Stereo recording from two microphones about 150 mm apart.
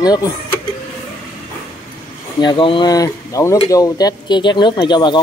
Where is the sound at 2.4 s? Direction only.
30° left (ahead or behind).